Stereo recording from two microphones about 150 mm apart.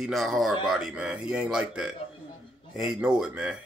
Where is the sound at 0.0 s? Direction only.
Centre (ahead or behind).